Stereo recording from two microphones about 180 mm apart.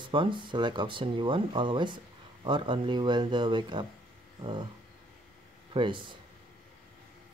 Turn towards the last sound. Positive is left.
turn(degrees=-25)  # may be behind; listen again after turning